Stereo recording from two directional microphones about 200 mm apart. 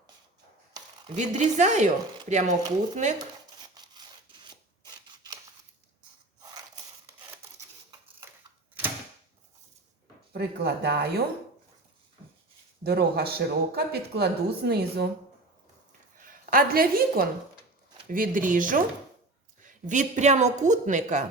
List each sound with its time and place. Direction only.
1.1 s a woman's voice: 35° right (ahead or behind)
5.0 s scissors: 20° right (ahead or behind)
6.4 s a sound: 20° right (ahead or behind)
7.9 s a sound: 15° right (ahead or behind)
10.3 s speech: 55° right (ahead or behind)
12.8 s speech: 55° right (ahead or behind)
16.2 s a woman's voice: 45° right (ahead or behind)